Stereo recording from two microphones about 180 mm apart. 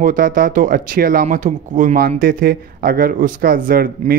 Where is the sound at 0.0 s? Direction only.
50° right (ahead or behind).